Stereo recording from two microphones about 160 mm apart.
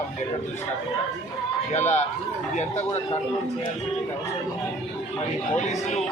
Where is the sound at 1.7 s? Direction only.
45° left (ahead or behind).